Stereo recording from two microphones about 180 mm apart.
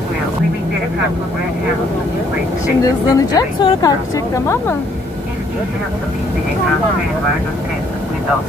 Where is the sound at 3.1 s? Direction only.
20° left (ahead or behind).